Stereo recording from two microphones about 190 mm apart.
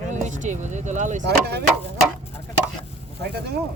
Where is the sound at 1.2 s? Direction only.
60° right (ahead or behind).